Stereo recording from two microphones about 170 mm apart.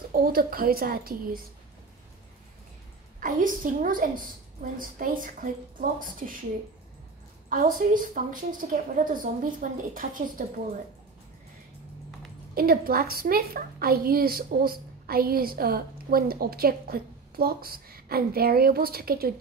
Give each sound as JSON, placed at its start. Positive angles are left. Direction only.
{"t": 0.1, "sound": "a woman's voice", "side_deg": -60}
{"t": 3.2, "sound": "a woman's voice", "side_deg": -55}
{"t": 7.4, "sound": "a woman's voice", "side_deg": -55}
{"t": 12.5, "sound": "a woman's voice", "side_deg": -60}